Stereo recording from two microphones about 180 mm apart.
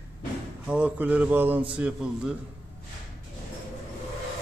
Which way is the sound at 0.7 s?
5° right (ahead or behind).